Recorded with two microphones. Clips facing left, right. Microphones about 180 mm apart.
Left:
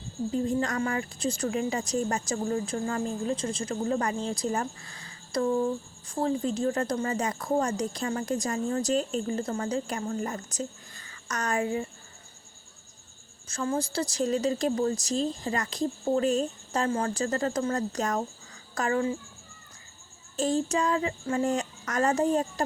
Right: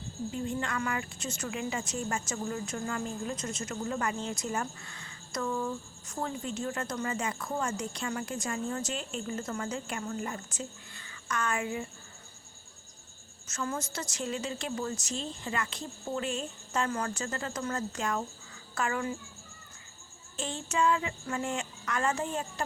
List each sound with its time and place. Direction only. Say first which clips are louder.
0.3 s a woman's voice: left 7 dB; 35° left (ahead or behind)
13.5 s a woman's voice: left 6 dB; 30° left (ahead or behind)
20.3 s a woman's voice: left 8 dB; 40° left (ahead or behind)